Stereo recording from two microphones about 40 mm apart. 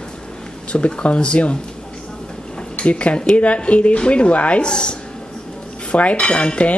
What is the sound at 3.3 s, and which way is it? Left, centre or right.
Dishes, left.